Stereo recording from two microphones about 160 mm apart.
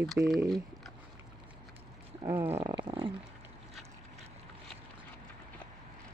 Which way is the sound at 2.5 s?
30° right (ahead or behind).